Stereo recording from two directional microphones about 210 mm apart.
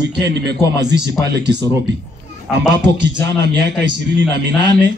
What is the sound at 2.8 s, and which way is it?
Speech, 55° right (ahead or behind).